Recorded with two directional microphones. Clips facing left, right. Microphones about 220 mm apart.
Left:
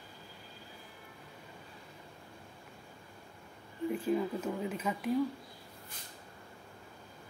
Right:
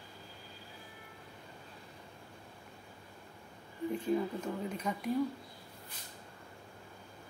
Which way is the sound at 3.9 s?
5° left (ahead or behind).